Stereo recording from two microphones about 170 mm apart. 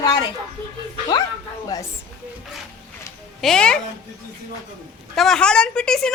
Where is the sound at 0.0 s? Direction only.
25° left (ahead or behind).